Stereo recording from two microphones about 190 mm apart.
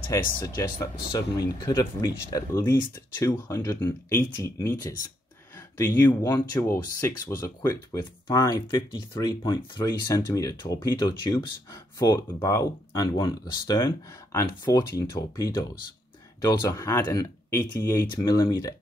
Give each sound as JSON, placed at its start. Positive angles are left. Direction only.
{"t": 0.4, "sound": "speech", "side_deg": 25}